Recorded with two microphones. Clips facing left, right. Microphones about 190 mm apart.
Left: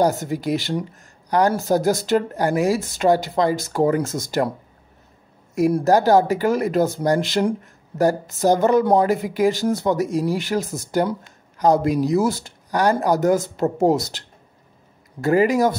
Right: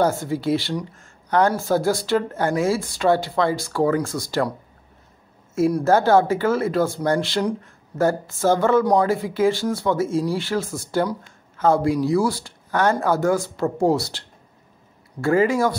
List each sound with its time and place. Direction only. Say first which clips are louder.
0.0 s speech: left 1 dB; 20° left (ahead or behind)
1.4 s speech: left 1 dB; 40° left (ahead or behind)
2.0 s speech: left 2 dB; 15° left (ahead or behind)
5.9 s speech: left 1 dB; 15° left (ahead or behind)